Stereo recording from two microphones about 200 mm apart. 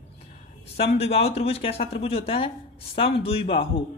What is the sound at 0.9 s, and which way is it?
Speech, 30° left (ahead or behind).